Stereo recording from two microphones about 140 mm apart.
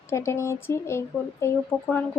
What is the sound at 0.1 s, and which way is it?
Speech, 20° left (ahead or behind).